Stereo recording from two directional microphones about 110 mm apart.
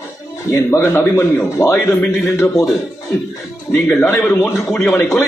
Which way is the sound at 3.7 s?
15° left (ahead or behind).